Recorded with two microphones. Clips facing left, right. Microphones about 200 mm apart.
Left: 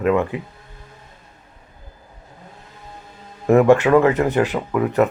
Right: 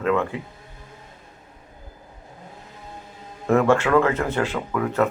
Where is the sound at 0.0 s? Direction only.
15° left (ahead or behind).